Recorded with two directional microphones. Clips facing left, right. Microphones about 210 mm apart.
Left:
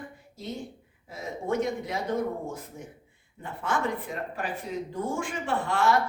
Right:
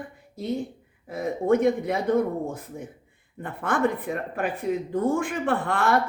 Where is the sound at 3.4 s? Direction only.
55° right (ahead or behind).